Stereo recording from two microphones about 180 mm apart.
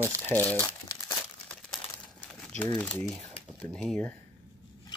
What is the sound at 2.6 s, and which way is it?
Speech, 5° left (ahead or behind).